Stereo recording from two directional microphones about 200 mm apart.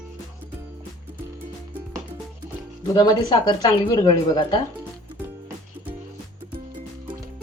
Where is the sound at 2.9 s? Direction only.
20° left (ahead or behind).